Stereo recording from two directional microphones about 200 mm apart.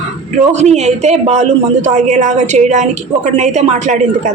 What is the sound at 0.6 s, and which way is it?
A woman's voice, 35° right (ahead or behind).